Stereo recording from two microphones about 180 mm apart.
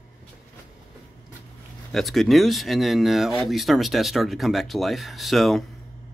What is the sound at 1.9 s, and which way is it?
Speech, centre (ahead or behind).